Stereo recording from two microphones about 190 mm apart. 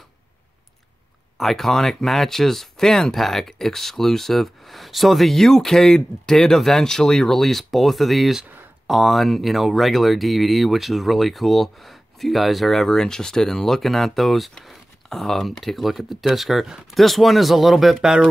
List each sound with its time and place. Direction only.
1.4 s speech: centre (ahead or behind)